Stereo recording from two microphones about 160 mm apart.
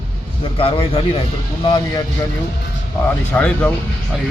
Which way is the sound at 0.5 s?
35° left (ahead or behind).